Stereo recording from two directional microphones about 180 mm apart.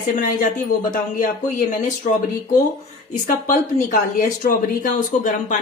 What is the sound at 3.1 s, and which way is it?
A woman's voice, 45° left (ahead or behind).